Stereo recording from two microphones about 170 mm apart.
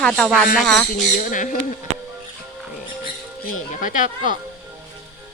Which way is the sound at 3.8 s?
50° left (ahead or behind).